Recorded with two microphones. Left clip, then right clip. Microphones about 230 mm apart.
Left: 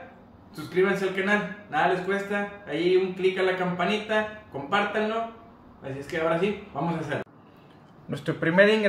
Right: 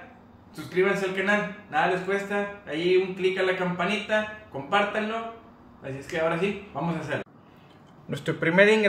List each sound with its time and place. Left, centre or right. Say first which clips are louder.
0.6 s a man's voice: even; centre
8.1 s speech: right 1 dB; right